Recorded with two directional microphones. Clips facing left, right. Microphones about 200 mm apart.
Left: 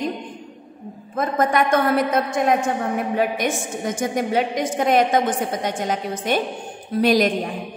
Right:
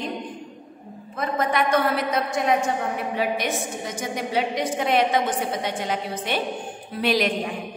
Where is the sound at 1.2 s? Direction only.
45° left (ahead or behind).